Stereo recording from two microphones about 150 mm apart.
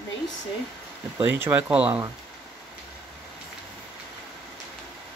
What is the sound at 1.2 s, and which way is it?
Speech, 15° right (ahead or behind).